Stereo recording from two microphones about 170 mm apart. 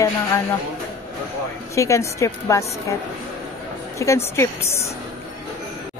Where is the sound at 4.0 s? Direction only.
15° left (ahead or behind).